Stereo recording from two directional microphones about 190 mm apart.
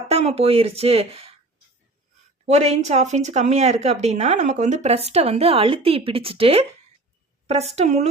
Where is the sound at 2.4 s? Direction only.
35° right (ahead or behind).